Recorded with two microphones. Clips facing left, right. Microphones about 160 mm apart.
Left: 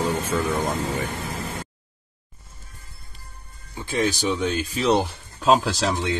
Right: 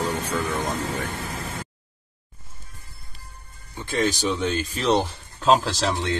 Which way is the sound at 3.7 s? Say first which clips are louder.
Even; 10° left (ahead or behind).